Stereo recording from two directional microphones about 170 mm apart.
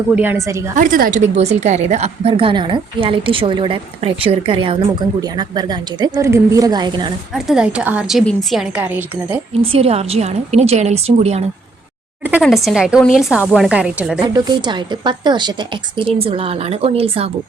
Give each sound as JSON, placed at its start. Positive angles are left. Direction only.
{"t": 0.2, "sound": "a woman's voice", "side_deg": -15}
{"t": 0.8, "sound": "a woman's voice", "side_deg": -55}
{"t": 7.3, "sound": "a woman's voice", "side_deg": -5}
{"t": 9.6, "sound": "a woman's voice", "side_deg": -35}
{"t": 12.4, "sound": "a woman's voice", "side_deg": 0}
{"t": 14.3, "sound": "a woman's voice", "side_deg": -25}